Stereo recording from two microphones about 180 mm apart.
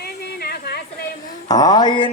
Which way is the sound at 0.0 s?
60° left (ahead or behind).